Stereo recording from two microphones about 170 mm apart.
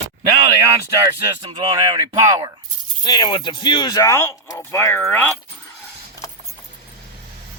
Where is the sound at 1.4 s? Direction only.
25° right (ahead or behind).